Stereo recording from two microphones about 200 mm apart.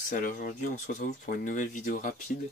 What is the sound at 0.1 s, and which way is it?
Speech, 40° left (ahead or behind).